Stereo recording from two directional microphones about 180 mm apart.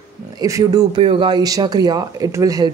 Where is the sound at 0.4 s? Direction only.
20° right (ahead or behind).